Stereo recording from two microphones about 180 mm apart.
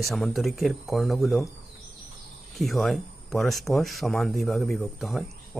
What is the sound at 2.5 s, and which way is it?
Speech, centre (ahead or behind).